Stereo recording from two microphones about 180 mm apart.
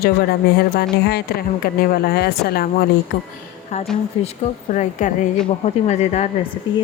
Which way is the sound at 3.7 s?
40° left (ahead or behind).